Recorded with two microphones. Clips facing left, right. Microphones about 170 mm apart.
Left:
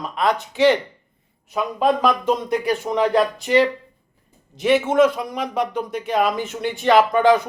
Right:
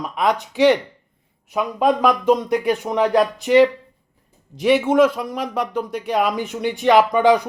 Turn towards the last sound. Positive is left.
turn(degrees=-15)  # may be behind; listen again after turning